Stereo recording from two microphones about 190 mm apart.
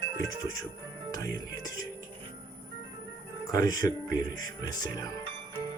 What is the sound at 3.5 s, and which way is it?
Speech, 20° left (ahead or behind).